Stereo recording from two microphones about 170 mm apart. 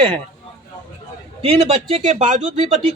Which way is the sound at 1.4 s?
35° right (ahead or behind).